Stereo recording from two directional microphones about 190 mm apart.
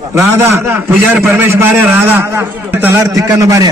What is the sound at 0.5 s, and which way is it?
A man's voice, 15° right (ahead or behind).